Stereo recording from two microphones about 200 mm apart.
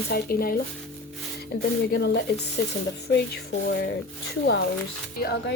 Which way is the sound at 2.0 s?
55° left (ahead or behind).